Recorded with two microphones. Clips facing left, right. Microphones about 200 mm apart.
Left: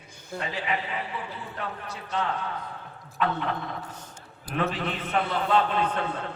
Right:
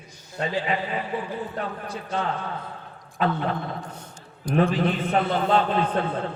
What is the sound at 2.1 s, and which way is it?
Speech, 50° right (ahead or behind).